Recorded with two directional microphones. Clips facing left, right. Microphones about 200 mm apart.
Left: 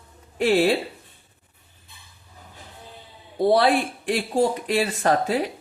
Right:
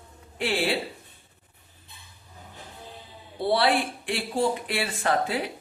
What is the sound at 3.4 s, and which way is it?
Speech, 40° left (ahead or behind).